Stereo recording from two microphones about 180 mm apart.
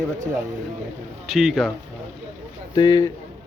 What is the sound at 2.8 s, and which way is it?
Speech, 20° left (ahead or behind).